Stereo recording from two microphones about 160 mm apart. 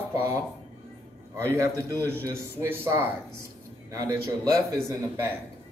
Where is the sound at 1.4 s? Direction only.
20° right (ahead or behind).